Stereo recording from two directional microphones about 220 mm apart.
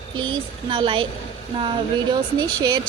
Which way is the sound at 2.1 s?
20° right (ahead or behind).